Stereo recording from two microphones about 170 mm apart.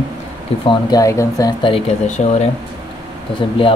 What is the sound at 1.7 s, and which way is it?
Speech, 40° left (ahead or behind).